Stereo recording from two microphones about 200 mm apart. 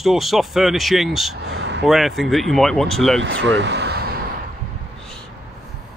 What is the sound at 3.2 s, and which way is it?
Speech, 65° right (ahead or behind).